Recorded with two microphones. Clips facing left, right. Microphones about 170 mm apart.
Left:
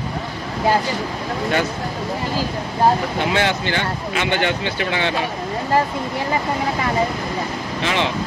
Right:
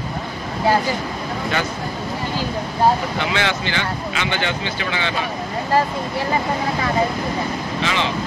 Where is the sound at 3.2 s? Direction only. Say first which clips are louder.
Left 2 dB; 45° left (ahead or behind).